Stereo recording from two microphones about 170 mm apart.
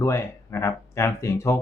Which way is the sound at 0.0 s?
15° left (ahead or behind).